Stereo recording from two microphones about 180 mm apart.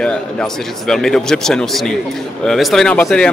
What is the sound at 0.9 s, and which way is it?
Speech, 5° left (ahead or behind).